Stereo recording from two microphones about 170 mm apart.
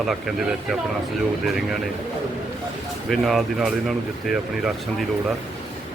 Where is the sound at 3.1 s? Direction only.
Centre (ahead or behind).